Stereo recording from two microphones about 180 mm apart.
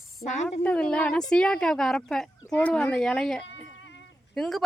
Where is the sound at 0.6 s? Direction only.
5° left (ahead or behind).